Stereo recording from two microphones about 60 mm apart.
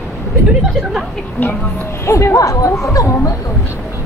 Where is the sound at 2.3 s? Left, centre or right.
Left.